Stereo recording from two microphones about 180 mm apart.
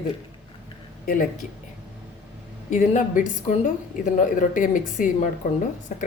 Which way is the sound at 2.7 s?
45° left (ahead or behind).